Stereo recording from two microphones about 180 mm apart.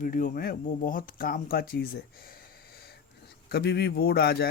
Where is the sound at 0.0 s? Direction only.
50° left (ahead or behind).